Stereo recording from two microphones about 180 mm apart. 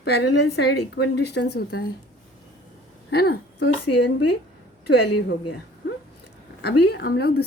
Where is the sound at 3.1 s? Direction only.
60° left (ahead or behind).